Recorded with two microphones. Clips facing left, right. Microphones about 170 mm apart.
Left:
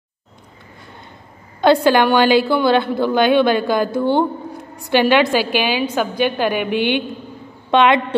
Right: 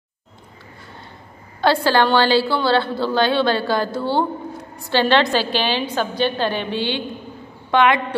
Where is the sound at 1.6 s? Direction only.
20° left (ahead or behind).